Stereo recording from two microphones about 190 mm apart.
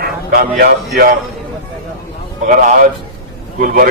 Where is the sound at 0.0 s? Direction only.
50° right (ahead or behind).